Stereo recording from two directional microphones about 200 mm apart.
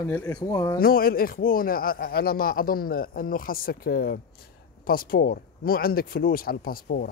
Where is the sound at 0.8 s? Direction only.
45° left (ahead or behind).